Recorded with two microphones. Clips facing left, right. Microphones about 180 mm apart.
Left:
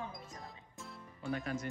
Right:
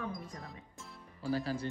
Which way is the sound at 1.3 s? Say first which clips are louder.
Right 3 dB; 30° right (ahead or behind).